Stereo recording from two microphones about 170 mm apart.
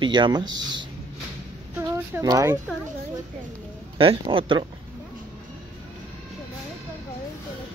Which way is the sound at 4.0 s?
30° right (ahead or behind).